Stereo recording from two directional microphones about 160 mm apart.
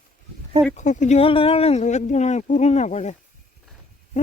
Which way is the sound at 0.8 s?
50° left (ahead or behind).